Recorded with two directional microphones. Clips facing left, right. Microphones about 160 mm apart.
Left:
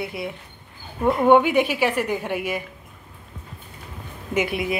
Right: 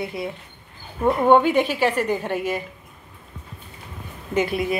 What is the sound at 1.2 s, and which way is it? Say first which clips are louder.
A woman's voice: even; 15° left (ahead or behind).